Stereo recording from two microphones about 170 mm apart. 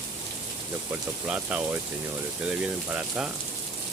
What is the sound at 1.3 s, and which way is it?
Speech, 10° right (ahead or behind).